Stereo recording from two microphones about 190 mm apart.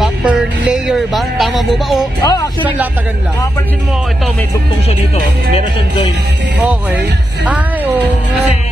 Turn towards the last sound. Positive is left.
turn(degrees=-5)  # may be behind; listen again after turning